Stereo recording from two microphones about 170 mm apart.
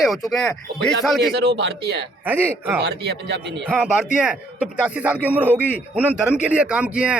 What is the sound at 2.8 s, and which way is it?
Speech, 85° right.